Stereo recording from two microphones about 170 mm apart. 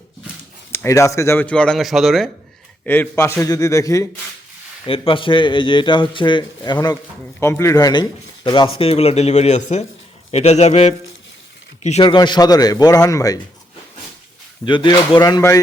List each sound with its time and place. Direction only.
0.7 s speech: 15° left (ahead or behind)
2.8 s speech: 10° left (ahead or behind)
4.9 s a man's voice: 30° left (ahead or behind)
14.6 s a man's voice: 30° left (ahead or behind)